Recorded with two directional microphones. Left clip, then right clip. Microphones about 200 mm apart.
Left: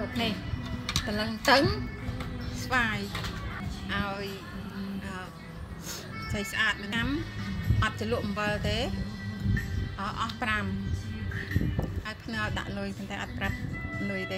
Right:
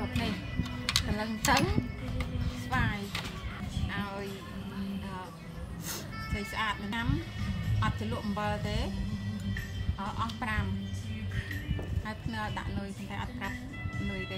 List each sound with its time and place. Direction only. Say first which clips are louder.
1.1 s a woman's voice: left 8 dB; 25° left (ahead or behind)
6.3 s a woman's voice: left 5 dB; 20° left (ahead or behind)
9.9 s a woman's voice: left 3 dB; 20° left (ahead or behind)
12.3 s a woman's voice: left 5 dB; 15° left (ahead or behind)